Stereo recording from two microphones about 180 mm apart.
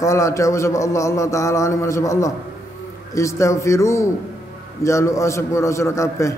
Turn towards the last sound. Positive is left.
turn(degrees=15)  # may be behind; listen again after turning